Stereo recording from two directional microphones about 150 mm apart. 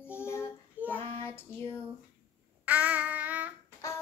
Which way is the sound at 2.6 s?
10° right (ahead or behind).